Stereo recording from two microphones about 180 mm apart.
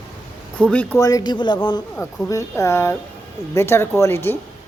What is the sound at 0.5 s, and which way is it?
Speech, 5° left (ahead or behind).